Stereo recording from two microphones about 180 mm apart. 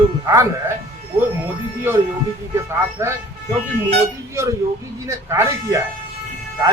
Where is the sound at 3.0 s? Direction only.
15° right (ahead or behind).